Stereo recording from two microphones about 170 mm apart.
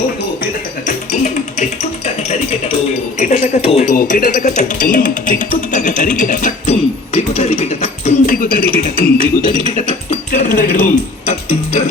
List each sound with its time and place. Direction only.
0.9 s music: 45° left (ahead or behind)
3.2 s speech: 45° left (ahead or behind)
3.9 s speech: 55° left (ahead or behind)
8.4 s speech: 55° left (ahead or behind)
9.6 s speech: 45° left (ahead or behind)